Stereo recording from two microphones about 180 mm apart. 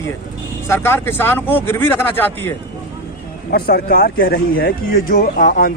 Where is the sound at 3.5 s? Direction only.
60° left (ahead or behind).